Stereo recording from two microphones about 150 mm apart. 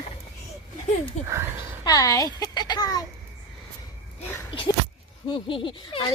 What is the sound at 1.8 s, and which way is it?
Speech, 25° left (ahead or behind).